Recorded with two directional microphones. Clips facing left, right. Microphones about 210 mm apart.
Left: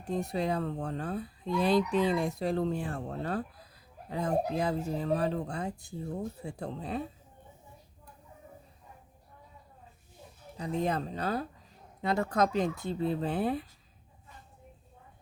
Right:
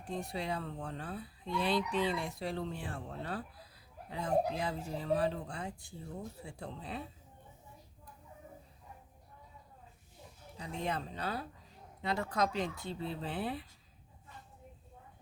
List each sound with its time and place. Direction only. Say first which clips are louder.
0.0 s speech: left 7 dB; 40° left (ahead or behind)
10.6 s speech: left 7 dB; 40° left (ahead or behind)